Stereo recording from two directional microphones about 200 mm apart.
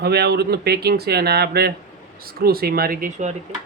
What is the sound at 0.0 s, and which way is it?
Speech, 55° right (ahead or behind).